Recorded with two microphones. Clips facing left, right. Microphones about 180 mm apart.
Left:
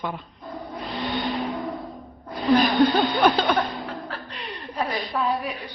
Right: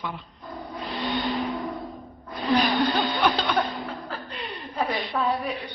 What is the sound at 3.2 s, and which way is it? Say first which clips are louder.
Speech: left 5 dB; 45° left (ahead or behind).